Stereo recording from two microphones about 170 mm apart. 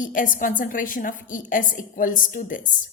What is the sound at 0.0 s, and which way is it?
A woman's voice, 50° left (ahead or behind).